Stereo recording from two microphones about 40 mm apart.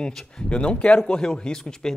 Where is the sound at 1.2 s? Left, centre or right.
Centre.